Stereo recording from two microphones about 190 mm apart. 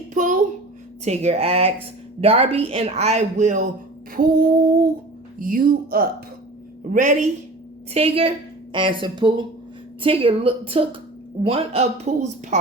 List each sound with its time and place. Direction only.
0.1 s a sound: 45° right (ahead or behind)
1.0 s speech: 35° right (ahead or behind)
7.9 s a woman's voice: 30° right (ahead or behind)